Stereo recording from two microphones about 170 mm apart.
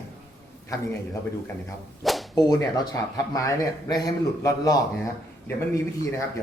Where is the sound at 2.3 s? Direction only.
20° left (ahead or behind).